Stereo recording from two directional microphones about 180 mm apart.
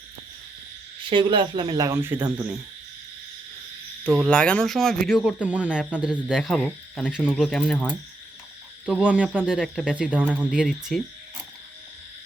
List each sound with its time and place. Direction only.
1.1 s speech: 30° right (ahead or behind); by 2.6 s 10° right (ahead or behind)
4.0 s speech: 5° left (ahead or behind)